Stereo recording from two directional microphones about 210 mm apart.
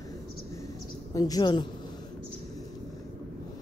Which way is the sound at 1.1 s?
15° left (ahead or behind).